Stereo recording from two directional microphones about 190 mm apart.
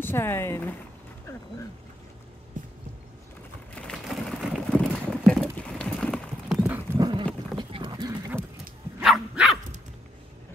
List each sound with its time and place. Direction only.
0.0 s speech: 10° left (ahead or behind)
2.6 s a sound: 45° right (ahead or behind)
3.7 s a sound: 5° left (ahead or behind)
5.1 s clip-clop: centre (ahead or behind)
6.6 s horse: 20° right (ahead or behind)
7.5 s clip-clop: 25° right (ahead or behind)
9.0 s dog: 5° right (ahead or behind)